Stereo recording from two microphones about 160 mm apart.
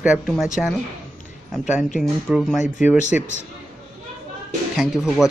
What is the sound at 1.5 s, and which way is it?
Speech, 5° right (ahead or behind).